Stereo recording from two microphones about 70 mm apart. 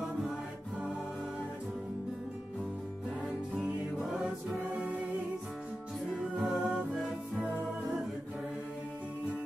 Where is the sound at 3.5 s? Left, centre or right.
Centre.